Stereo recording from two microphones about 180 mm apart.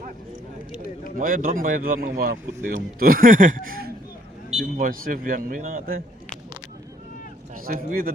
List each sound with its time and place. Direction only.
1.2 s speech: 50° right (ahead or behind)
7.5 s speech: 50° right (ahead or behind)